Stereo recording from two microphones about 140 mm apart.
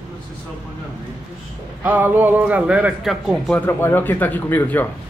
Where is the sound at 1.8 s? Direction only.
15° right (ahead or behind).